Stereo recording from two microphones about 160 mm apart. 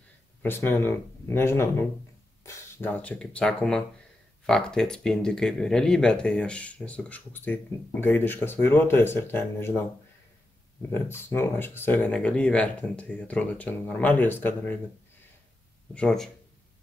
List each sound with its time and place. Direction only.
0.4 s speech: 15° left (ahead or behind)
10.9 s speech: 15° left (ahead or behind)
15.9 s speech: 5° left (ahead or behind)